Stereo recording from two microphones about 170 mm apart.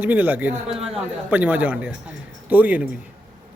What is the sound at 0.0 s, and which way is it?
A man's voice, 10° right (ahead or behind).